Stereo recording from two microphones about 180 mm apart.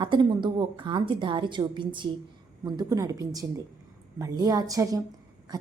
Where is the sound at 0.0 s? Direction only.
25° right (ahead or behind).